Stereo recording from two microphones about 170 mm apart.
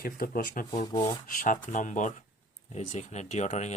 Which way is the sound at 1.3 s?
50° left (ahead or behind).